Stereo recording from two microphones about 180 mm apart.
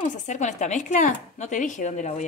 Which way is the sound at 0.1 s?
45° left (ahead or behind).